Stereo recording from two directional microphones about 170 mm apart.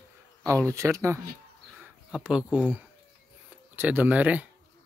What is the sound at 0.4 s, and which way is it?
Speech, 15° right (ahead or behind).